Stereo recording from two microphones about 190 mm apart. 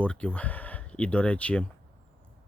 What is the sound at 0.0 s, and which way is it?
Speech, 5° left (ahead or behind).